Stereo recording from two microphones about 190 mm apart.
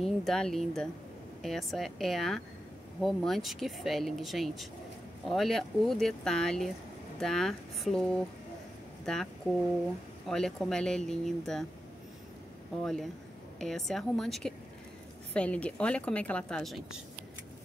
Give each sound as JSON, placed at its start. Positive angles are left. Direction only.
{"t": 0.0, "sound": "speech", "side_deg": 0}
{"t": 12.8, "sound": "a woman's voice", "side_deg": 0}